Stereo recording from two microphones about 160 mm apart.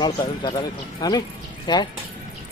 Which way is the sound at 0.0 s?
25° left (ahead or behind).